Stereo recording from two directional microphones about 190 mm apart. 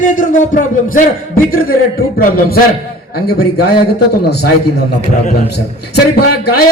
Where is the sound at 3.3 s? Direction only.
55° left (ahead or behind).